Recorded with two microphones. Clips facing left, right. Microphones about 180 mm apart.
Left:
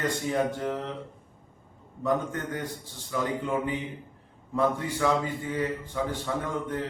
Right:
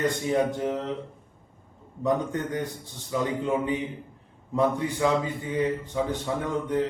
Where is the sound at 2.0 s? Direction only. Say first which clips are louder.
Right 2 dB; 20° right (ahead or behind).